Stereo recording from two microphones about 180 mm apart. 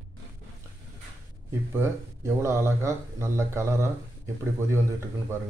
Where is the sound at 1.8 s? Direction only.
15° right (ahead or behind).